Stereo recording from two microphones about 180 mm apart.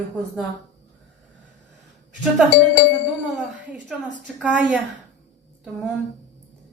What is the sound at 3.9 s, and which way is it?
Speech, 5° right (ahead or behind).